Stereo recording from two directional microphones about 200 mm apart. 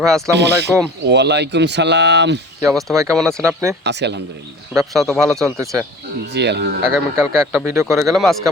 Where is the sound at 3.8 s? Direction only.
60° right (ahead or behind).